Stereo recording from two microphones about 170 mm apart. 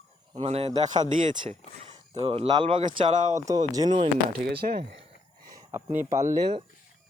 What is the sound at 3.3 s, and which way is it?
Speech, 20° right (ahead or behind).